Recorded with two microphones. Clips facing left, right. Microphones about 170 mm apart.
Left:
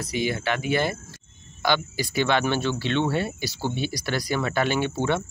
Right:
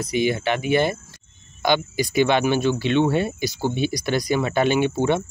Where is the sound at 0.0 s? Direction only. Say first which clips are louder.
Right 5 dB; 20° right (ahead or behind).